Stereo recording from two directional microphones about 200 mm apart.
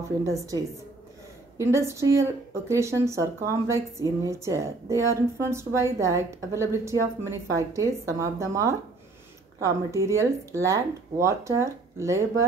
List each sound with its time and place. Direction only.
0.2 s speech: 15° right (ahead or behind)
1.6 s speech: 15° right (ahead or behind)